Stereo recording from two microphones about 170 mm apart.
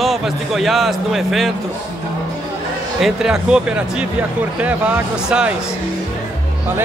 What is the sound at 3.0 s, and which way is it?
Speech, 5° right (ahead or behind).